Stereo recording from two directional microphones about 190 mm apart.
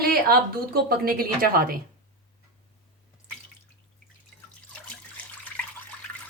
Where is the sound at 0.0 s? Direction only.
50° right (ahead or behind).